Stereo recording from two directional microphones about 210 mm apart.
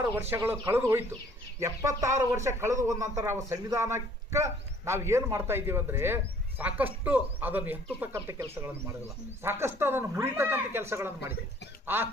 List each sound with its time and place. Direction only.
0.0 s speech: 10° right (ahead or behind)